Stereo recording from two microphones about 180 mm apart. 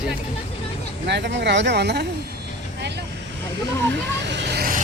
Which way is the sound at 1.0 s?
70° right (ahead or behind).